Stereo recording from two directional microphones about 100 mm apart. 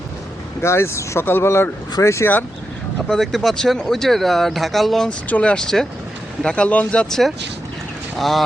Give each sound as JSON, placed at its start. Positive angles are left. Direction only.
{"t": 0.6, "sound": "speech", "side_deg": 25}
{"t": 3.1, "sound": "speech", "side_deg": 0}